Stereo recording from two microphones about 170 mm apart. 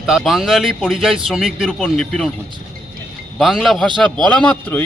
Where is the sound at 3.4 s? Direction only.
Centre (ahead or behind).